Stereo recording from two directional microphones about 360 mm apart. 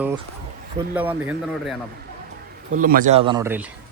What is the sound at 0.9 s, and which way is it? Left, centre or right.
Speech, centre.